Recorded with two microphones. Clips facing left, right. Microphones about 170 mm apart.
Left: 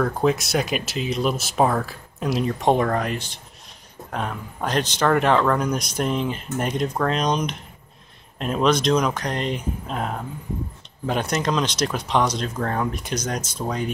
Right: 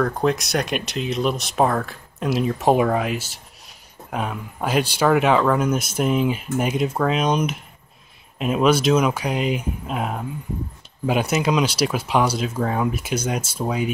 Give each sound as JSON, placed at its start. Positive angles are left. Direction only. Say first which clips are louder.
{"t": 0.0, "sound": "speech", "louder": "even", "side_deg": 0}